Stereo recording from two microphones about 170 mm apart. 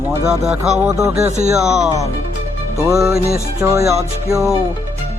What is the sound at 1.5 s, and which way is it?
Mantra, 5° right (ahead or behind).